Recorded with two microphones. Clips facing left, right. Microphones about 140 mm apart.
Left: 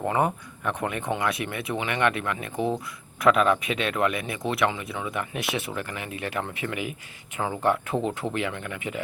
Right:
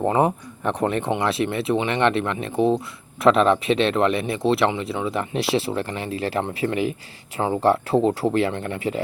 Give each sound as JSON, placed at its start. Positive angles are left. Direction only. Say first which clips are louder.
{"t": 0.0, "sound": "speech", "louder": "right 5 dB", "side_deg": -30}